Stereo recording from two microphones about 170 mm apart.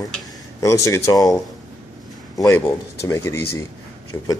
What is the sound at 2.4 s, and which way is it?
Speech, 20° left (ahead or behind).